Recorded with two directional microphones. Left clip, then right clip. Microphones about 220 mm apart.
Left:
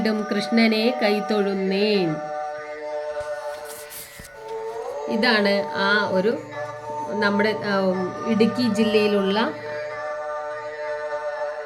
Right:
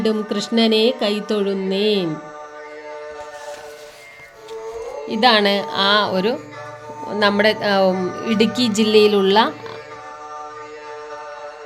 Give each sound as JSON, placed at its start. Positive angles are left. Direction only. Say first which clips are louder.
{"t": 0.0, "sound": "speech", "louder": "right 4 dB", "side_deg": -75}
{"t": 0.3, "sound": "a sound", "louder": "right 3 dB", "side_deg": -15}
{"t": 1.5, "sound": "music", "louder": "right 3 dB", "side_deg": -80}
{"t": 5.2, "sound": "a woman's voice", "louder": "right 5 dB", "side_deg": -30}